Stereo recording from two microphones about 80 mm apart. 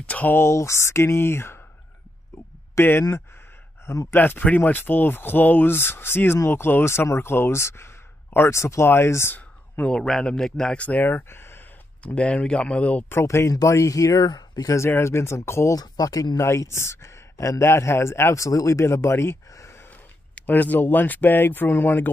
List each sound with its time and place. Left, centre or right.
0.0 s speech: centre
0.4 s speech: left
2.7 s speech: left
3.8 s speech: left
4.1 s speech: left
9.8 s speech: centre
10.8 s speech: left
12.0 s speech: centre
13.1 s speech: left
14.8 s speech: left
15.7 s speech: left
16.4 s speech: left
20.3 s speech: centre